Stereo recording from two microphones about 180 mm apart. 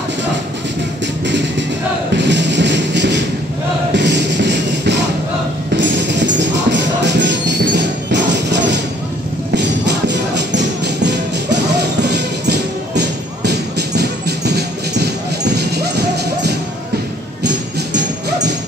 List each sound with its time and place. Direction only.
1.2 s music: 80° right